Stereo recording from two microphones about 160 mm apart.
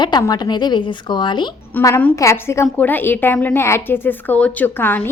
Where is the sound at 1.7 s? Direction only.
15° left (ahead or behind).